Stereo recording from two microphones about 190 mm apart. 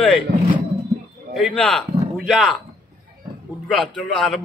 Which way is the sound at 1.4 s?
5° left (ahead or behind).